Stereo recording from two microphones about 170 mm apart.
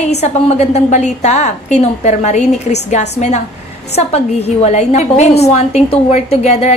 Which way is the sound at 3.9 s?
40° left (ahead or behind).